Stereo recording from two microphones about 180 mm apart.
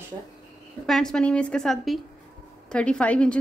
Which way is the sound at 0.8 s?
Centre (ahead or behind).